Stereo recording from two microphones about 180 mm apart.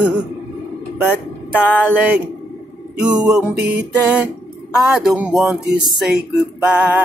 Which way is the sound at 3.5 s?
65° right (ahead or behind).